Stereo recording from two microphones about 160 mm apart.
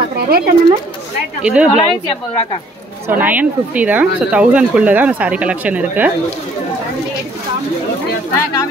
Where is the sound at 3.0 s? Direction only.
10° right (ahead or behind).